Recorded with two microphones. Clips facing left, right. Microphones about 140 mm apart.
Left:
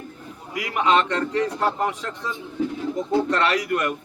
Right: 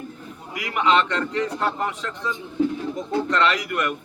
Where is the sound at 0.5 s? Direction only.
30° left (ahead or behind).